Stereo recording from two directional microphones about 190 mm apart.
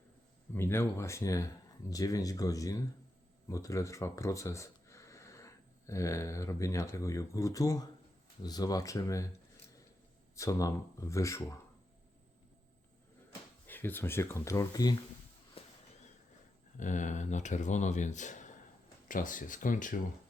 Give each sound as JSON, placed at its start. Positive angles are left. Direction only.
{"t": 0.5, "sound": "speech", "side_deg": 10}
{"t": 10.3, "sound": "speech", "side_deg": 15}
{"t": 13.7, "sound": "speech", "side_deg": 10}
{"t": 15.6, "sound": "a sound", "side_deg": 30}
{"t": 16.7, "sound": "speech", "side_deg": 40}